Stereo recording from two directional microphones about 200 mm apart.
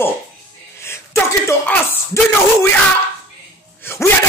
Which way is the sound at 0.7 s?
10° left (ahead or behind).